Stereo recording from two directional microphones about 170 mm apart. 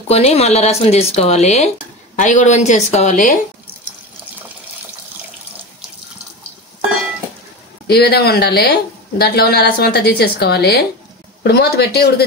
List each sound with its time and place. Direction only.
0.1 s speech: 40° left (ahead or behind)
7.8 s speech: 70° left (ahead or behind)